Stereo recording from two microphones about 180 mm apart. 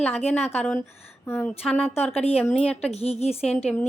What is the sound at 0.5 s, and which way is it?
Speech, 5° left (ahead or behind).